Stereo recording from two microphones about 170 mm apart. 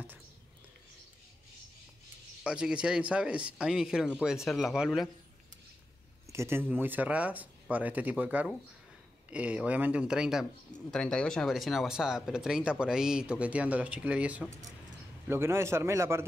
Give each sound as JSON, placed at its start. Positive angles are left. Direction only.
{"t": 2.4, "sound": "speech", "side_deg": -5}
{"t": 6.3, "sound": "speech", "side_deg": -15}